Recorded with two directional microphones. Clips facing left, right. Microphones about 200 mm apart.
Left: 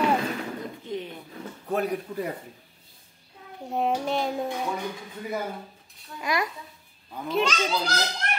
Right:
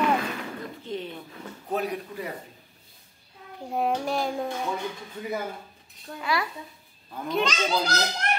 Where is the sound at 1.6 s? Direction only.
50° left (ahead or behind).